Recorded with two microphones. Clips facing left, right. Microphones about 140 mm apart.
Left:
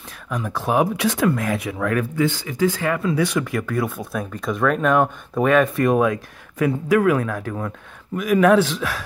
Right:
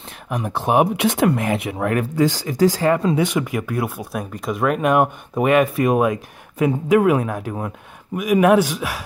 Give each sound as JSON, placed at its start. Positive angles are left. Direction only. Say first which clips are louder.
{"t": 0.3, "sound": "speech", "louder": "right 2 dB", "side_deg": -20}
{"t": 2.1, "sound": "speech", "louder": "right 3 dB", "side_deg": -35}
{"t": 3.3, "sound": "speech", "louder": "right 1 dB", "side_deg": -15}